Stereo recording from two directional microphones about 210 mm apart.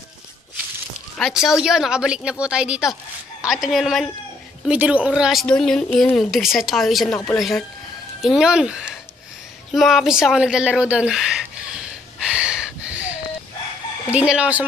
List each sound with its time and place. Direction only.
1.1 s a woman's voice: centre (ahead or behind)
12.4 s a sound: 5° right (ahead or behind)
14.1 s speech: 5° right (ahead or behind)